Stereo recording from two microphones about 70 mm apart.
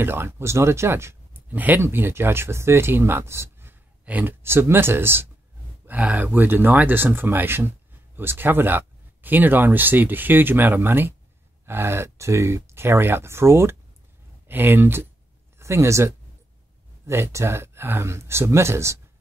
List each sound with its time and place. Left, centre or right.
0.0 s speech: right
1.3 s a sound: right
1.8 s speech: right
4.0 s speech: right
5.9 s speech: right
15.6 s speech: right